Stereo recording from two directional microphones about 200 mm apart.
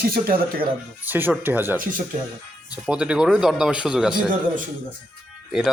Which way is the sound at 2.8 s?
5° right (ahead or behind).